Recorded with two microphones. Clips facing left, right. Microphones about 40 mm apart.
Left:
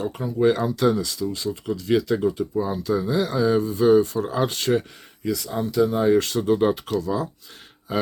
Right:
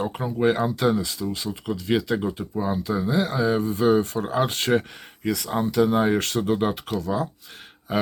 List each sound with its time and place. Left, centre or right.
0.0 s speech: right
6.4 s speech: centre